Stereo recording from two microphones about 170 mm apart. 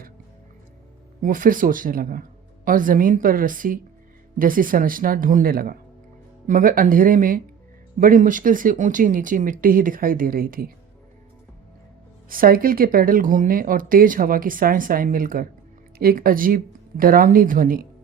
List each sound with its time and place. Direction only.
1.2 s speech: 55° right (ahead or behind)
12.3 s speech: 60° right (ahead or behind)